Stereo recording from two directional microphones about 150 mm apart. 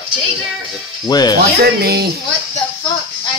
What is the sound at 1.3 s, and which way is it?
Speech, 90° right.